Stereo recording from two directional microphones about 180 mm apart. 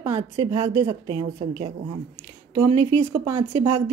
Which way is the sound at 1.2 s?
40° right (ahead or behind).